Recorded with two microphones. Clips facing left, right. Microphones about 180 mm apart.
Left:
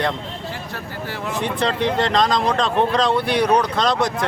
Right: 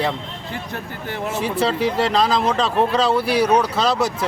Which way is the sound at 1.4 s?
5° right (ahead or behind).